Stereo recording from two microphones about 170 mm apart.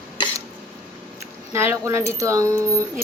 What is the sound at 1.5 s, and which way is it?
A woman's voice, 15° right (ahead or behind).